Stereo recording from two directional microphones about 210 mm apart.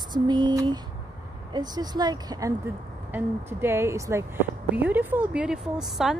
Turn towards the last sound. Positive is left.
turn(degrees=0)  # may be behind; listen again after turning